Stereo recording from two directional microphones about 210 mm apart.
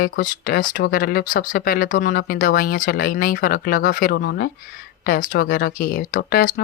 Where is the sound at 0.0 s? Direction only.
45° left (ahead or behind).